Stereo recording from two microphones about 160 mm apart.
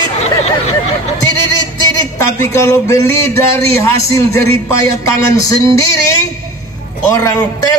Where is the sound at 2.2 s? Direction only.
20° left (ahead or behind).